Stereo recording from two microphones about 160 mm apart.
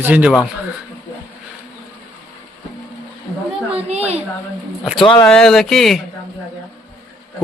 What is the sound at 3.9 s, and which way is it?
Speech, 40° right (ahead or behind).